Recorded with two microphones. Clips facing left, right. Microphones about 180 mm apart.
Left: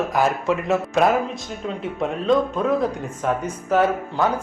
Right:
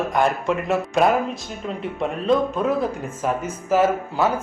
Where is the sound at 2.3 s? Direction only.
Centre (ahead or behind).